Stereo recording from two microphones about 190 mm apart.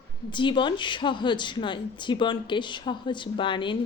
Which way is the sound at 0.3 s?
25° left (ahead or behind).